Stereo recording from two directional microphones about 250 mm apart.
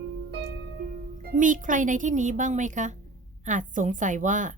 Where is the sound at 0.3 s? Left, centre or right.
Right.